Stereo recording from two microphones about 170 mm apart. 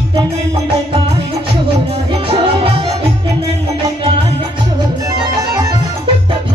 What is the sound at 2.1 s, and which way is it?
Music, 35° right (ahead or behind).